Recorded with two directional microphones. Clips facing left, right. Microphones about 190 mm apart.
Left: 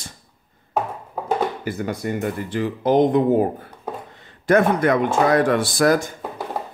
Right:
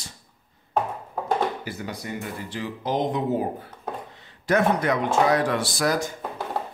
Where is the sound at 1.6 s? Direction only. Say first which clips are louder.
Left 8 dB; 50° left (ahead or behind).